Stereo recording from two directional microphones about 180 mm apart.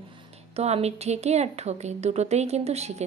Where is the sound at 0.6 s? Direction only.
35° right (ahead or behind).